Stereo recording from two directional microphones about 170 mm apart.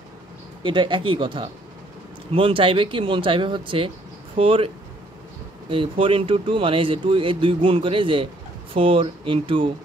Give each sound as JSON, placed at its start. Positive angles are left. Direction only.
{"t": 0.7, "sound": "speech", "side_deg": -30}